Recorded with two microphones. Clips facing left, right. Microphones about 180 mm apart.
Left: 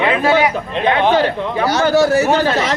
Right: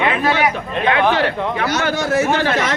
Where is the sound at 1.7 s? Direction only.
35° left (ahead or behind).